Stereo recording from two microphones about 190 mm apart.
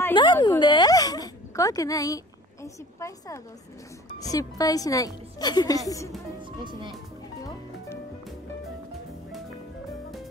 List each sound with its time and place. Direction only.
0.1 s dog: 25° left (ahead or behind)
4.1 s a woman's voice: 20° left (ahead or behind)